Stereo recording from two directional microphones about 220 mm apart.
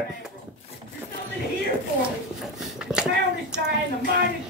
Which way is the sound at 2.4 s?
Centre (ahead or behind).